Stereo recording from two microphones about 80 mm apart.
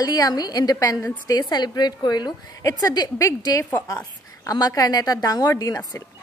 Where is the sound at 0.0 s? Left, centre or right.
Left.